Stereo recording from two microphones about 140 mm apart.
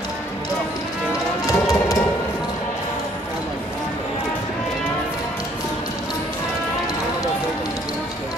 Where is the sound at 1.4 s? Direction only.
25° left (ahead or behind).